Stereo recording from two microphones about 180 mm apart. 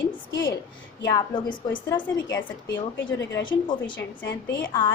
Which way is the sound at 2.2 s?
85° left.